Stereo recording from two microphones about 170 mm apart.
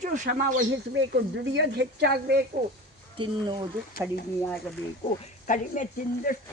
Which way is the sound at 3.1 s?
30° right (ahead or behind).